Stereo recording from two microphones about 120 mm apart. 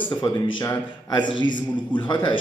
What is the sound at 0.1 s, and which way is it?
A man's voice, 35° left (ahead or behind).